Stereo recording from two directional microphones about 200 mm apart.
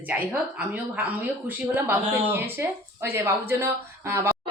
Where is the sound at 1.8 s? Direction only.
10° right (ahead or behind).